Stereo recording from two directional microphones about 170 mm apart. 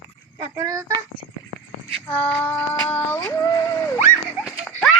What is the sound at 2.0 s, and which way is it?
Female singing, 10° left (ahead or behind).